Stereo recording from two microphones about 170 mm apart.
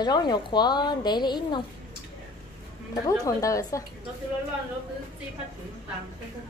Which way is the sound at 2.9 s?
20° left (ahead or behind).